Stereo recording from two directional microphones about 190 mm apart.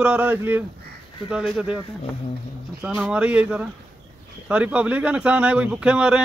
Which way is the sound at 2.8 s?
5° right (ahead or behind).